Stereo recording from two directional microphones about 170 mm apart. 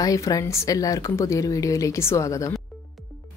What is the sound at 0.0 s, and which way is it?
Speech, 20° left (ahead or behind).